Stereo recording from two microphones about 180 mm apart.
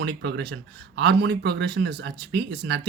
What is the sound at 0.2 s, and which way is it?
Speech, 70° right (ahead or behind).